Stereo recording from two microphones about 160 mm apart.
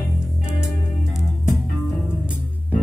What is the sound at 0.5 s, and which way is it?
Music, 5° right (ahead or behind).